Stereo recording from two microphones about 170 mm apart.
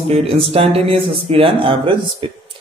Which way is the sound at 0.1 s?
35° right (ahead or behind).